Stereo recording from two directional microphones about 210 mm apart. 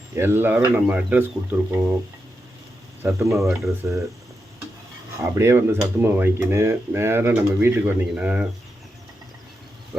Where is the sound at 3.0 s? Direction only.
15° right (ahead or behind).